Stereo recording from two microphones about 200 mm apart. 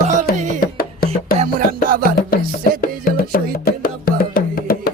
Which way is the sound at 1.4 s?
45° right (ahead or behind).